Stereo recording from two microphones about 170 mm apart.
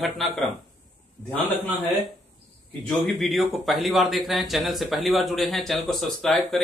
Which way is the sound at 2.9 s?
Centre (ahead or behind).